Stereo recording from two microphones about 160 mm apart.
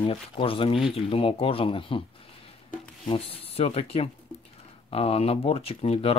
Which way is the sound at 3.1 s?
40° left (ahead or behind).